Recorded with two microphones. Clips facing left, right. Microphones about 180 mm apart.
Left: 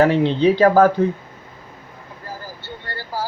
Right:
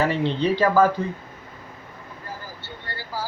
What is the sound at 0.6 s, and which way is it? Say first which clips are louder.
Speech: left 4 dB; 50° left (ahead or behind).